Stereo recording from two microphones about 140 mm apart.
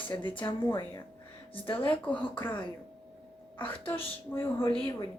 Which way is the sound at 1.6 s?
40° left (ahead or behind).